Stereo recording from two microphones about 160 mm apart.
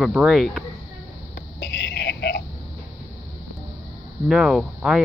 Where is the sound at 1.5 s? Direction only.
90° left.